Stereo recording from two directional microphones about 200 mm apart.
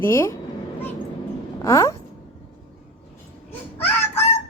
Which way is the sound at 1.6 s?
15° left (ahead or behind).